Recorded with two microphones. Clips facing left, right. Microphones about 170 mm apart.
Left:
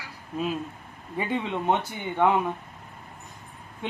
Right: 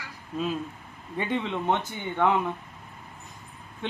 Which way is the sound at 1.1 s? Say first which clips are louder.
Even; 10° left (ahead or behind).